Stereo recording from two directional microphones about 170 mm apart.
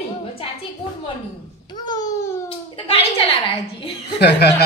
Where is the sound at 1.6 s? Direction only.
25° left (ahead or behind).